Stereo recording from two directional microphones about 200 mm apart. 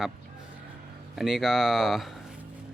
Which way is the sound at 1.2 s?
Centre (ahead or behind).